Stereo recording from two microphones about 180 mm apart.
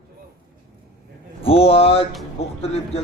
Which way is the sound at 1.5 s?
30° left (ahead or behind).